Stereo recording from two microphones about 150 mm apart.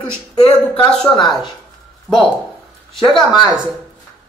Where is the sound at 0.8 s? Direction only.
5° left (ahead or behind).